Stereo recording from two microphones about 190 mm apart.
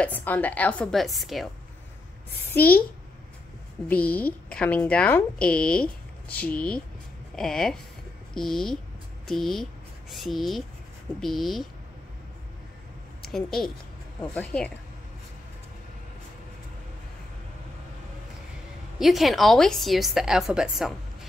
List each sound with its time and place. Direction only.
0.0 s speech: 10° left (ahead or behind)
2.5 s a child's voice: 55° left (ahead or behind)
3.9 s a woman's voice: 10° left (ahead or behind)
13.3 s a woman's voice: centre (ahead or behind)
18.9 s a woman's voice: centre (ahead or behind)